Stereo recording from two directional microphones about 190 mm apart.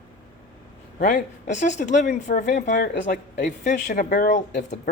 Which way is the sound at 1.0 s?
40° left (ahead or behind).